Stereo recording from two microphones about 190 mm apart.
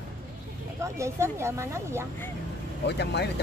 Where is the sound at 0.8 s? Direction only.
15° right (ahead or behind).